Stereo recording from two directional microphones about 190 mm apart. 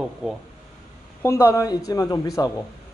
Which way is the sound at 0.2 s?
5° right (ahead or behind).